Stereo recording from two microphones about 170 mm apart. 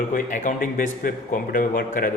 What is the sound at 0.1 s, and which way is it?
A man's voice, 50° left (ahead or behind).